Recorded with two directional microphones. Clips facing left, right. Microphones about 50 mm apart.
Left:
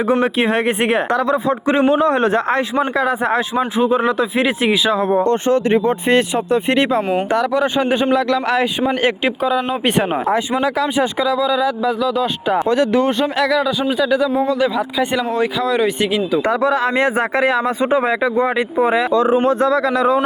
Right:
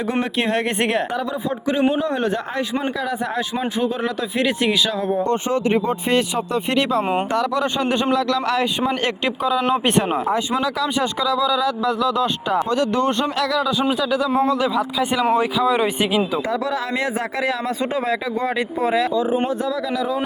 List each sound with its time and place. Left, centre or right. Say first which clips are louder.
0.1 s speech: left 5 dB; centre
1.1 s speech: left 7 dB; left
1.6 s speech: left 4 dB; left
3.8 s speech: left 8 dB; left
4.9 s speech: left 5 dB; left
10.3 s speech: left 4 dB; left
10.8 s speech: left 3 dB; left
12.5 s speech: left 4 dB; left
13.1 s speech: left 4 dB; centre
16.4 s speech: left 7 dB; left
19.1 s speech: left 6 dB; left
19.5 s speech: left 8 dB; left